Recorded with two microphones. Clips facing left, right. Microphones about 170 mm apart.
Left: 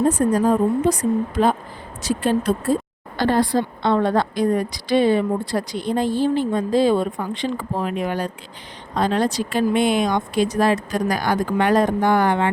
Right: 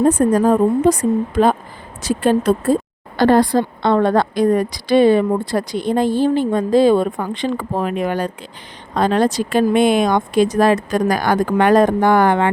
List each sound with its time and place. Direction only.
0.0 s a woman's voice: 55° right (ahead or behind)
3.9 s speech: 65° right (ahead or behind)